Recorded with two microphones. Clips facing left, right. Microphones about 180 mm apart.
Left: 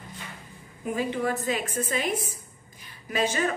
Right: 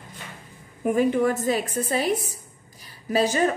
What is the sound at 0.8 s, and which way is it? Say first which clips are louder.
A woman's voice: right 7 dB; 50° right (ahead or behind).